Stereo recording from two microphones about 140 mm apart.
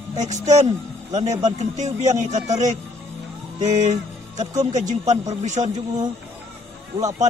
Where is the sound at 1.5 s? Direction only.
55° right (ahead or behind).